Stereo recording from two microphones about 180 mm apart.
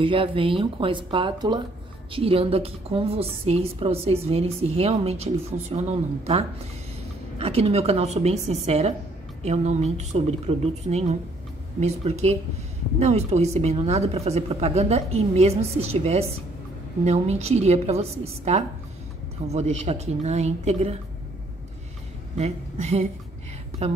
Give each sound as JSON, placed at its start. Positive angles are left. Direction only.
{"t": 0.0, "sound": "a woman's voice", "side_deg": -30}
{"t": 22.4, "sound": "a woman's voice", "side_deg": -40}